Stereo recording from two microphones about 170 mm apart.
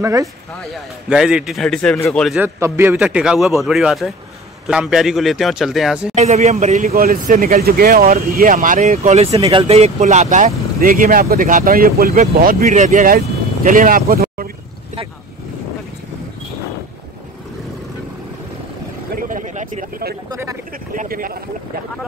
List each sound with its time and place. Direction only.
0.0 s speech: 20° right (ahead or behind)
1.0 s a man's voice: 5° right (ahead or behind)
2.4 s a man's voice: 15° right (ahead or behind)
6.1 s speech: 40° right (ahead or behind)
6.9 s speech: 55° right (ahead or behind)
19.1 s a sound: 50° right (ahead or behind)
20.2 s speech: 20° right (ahead or behind)
20.9 s speech: 55° right (ahead or behind)